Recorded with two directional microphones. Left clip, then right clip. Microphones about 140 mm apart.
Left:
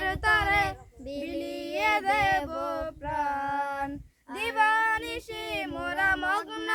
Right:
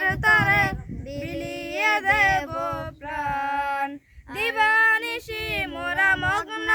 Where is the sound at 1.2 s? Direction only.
15° right (ahead or behind); by 2.8 s 30° right (ahead or behind).